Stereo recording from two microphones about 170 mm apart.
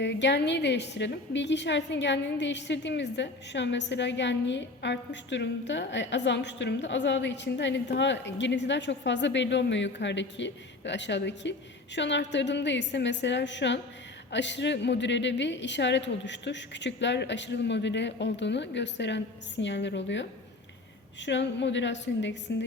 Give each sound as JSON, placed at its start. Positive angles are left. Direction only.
{"t": 0.0, "sound": "a woman's voice", "side_deg": 90}